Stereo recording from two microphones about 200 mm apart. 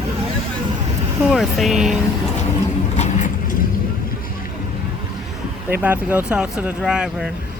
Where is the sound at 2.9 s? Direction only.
35° left (ahead or behind).